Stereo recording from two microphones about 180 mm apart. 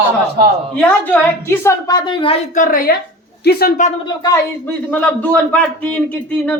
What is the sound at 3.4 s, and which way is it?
Speech, 65° left (ahead or behind).